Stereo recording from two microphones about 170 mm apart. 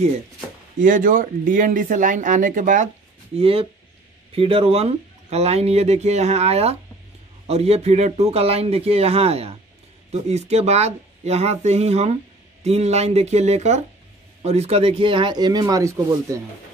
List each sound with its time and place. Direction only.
0.7 s speech: 50° right (ahead or behind)
3.3 s speech: 35° right (ahead or behind); by 16.4 s 15° right (ahead or behind)